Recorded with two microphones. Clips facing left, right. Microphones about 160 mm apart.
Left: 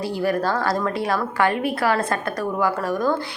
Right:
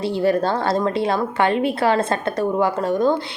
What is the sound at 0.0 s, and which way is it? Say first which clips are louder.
A woman's voice: right 3 dB; 25° right (ahead or behind).